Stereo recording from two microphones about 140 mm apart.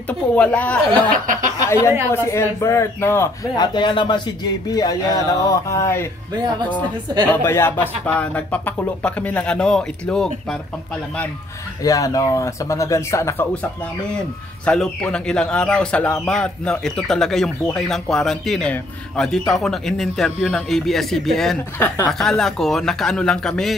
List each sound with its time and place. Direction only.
0.4 s speech: 10° left (ahead or behind)
1.1 s speech: 70° right (ahead or behind)
2.0 s speech: 20° left (ahead or behind)
3.5 s speech: 30° left (ahead or behind)
7.4 s speech: 15° left (ahead or behind)
11.8 s speech: 25° left (ahead or behind)
14.7 s a man's voice: 5° left (ahead or behind)
21.7 s speech: 15° left (ahead or behind)
22.2 s a man's voice: 5° left (ahead or behind)